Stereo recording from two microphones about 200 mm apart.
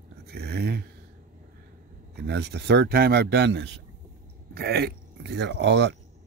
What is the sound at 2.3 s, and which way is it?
Speech, 55° right (ahead or behind).